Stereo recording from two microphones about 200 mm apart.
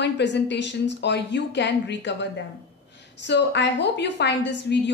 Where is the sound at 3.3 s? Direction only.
60° left (ahead or behind).